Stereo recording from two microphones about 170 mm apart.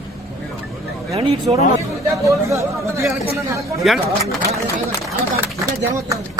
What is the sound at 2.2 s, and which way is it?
Speech, 15° right (ahead or behind).